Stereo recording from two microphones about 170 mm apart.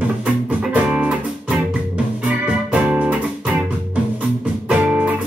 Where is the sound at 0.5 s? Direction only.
5° right (ahead or behind).